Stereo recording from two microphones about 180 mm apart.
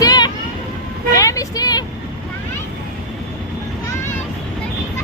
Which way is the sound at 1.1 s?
20° left (ahead or behind).